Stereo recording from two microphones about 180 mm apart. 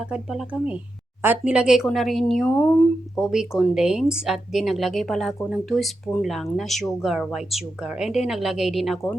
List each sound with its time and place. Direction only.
0.0 s speech: 5° right (ahead or behind)